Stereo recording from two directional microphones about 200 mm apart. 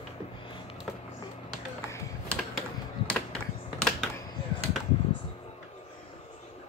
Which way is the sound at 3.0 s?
5° left (ahead or behind).